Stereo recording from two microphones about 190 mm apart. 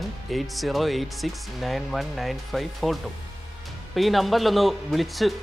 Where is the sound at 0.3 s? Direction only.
Centre (ahead or behind).